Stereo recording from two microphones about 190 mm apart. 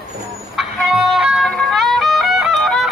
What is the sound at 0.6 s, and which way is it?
Music, centre (ahead or behind).